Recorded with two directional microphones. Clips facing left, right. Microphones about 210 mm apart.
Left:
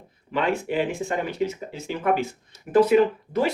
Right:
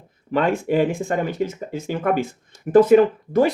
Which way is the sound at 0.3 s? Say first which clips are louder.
Right 5 dB; 45° right (ahead or behind).